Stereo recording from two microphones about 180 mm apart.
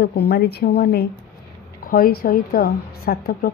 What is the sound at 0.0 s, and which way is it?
A woman's voice, 65° left (ahead or behind).